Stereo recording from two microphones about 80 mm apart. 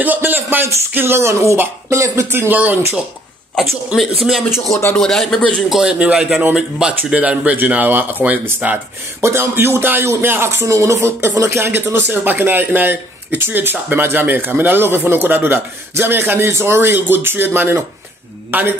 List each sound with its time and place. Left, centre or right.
0.0 s speech: right
3.5 s speech: centre
5.8 s speech: centre
9.2 s speech: right